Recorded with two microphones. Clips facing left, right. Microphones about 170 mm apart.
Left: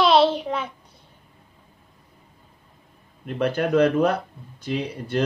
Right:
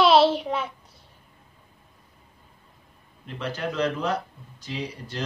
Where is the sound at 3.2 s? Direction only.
55° left (ahead or behind).